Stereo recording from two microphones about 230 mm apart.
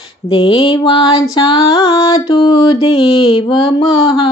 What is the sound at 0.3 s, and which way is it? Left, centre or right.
Music, left.